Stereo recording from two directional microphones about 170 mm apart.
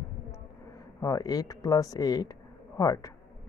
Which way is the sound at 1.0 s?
20° left (ahead or behind).